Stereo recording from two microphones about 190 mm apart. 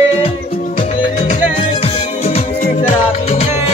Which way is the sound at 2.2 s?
35° left (ahead or behind).